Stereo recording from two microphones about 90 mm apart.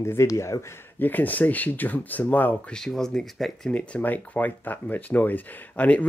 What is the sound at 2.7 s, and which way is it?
Speech, 5° left (ahead or behind).